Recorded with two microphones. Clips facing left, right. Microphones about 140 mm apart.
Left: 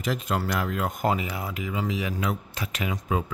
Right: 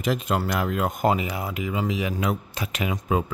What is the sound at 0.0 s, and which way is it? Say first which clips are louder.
Speech: right 3 dB; 20° right (ahead or behind).